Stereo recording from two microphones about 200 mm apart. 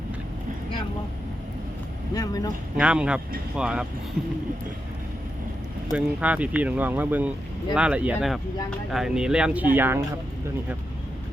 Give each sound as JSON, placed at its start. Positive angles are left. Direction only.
{"t": 2.1, "sound": "speech", "side_deg": 20}
{"t": 2.7, "sound": "speech", "side_deg": -5}
{"t": 5.9, "sound": "speech", "side_deg": -5}